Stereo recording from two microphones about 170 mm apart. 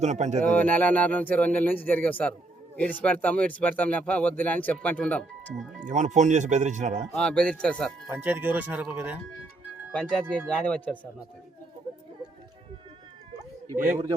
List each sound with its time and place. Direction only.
0.0 s speech: 45° right (ahead or behind)
0.4 s speech: 10° left (ahead or behind)
5.8 s speech: 45° right (ahead or behind)
7.1 s speech: 5° left (ahead or behind)
8.1 s speech: 10° right (ahead or behind)
9.9 s speech: 5° left (ahead or behind)